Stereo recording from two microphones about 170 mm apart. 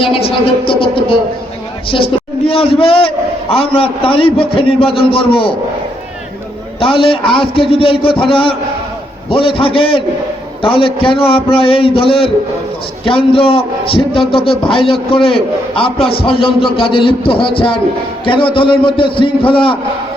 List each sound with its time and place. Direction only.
0.0 s a man's voice: 35° left (ahead or behind)
6.7 s a man's voice: 30° left (ahead or behind)